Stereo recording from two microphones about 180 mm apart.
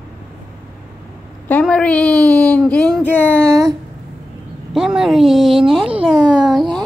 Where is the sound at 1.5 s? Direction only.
5° left (ahead or behind).